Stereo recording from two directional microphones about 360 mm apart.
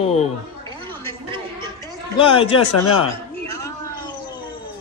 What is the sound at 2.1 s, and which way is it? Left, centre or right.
Speech, centre.